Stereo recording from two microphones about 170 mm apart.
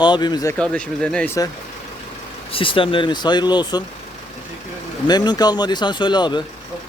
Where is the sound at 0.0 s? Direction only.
25° left (ahead or behind).